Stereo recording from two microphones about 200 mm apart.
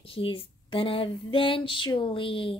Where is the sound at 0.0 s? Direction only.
25° left (ahead or behind).